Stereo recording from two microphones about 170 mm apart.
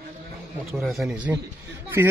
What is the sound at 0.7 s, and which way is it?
Speech, centre (ahead or behind).